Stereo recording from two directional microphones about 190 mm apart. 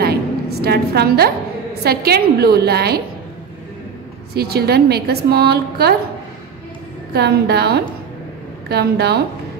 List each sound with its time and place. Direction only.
0.0 s a sound: 55° right (ahead or behind)
1.8 s a woman's voice: 55° right (ahead or behind)
4.4 s a woman's voice: 55° right (ahead or behind)
7.1 s a woman's voice: 60° right (ahead or behind)